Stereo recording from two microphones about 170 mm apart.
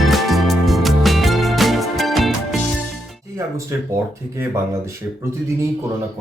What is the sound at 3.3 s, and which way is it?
Speech, 15° right (ahead or behind).